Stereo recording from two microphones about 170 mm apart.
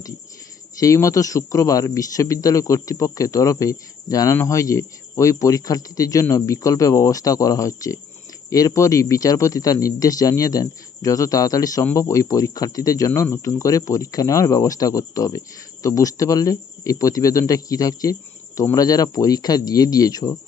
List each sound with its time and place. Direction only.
0.8 s speech: 20° left (ahead or behind)